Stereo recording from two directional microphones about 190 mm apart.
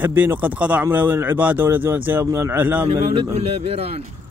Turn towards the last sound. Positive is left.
turn(degrees=-30)  # may be behind; listen again after turning